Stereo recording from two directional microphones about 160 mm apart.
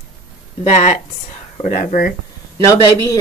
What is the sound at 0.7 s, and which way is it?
Speech, 45° left (ahead or behind).